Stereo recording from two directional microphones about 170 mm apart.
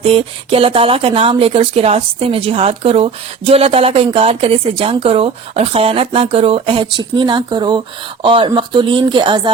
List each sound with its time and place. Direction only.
0.0 s speech: 35° right (ahead or behind)